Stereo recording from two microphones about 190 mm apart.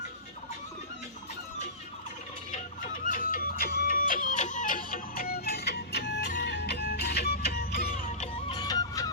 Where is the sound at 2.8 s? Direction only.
45° left (ahead or behind).